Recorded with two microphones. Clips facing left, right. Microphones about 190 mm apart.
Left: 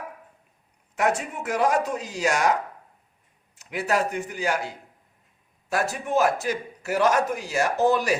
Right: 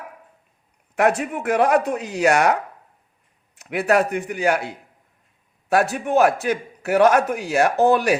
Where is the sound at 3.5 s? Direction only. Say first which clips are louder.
Right 6 dB; 60° right (ahead or behind).